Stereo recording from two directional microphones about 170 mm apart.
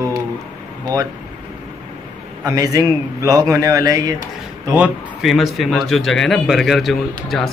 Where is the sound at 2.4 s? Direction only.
20° right (ahead or behind).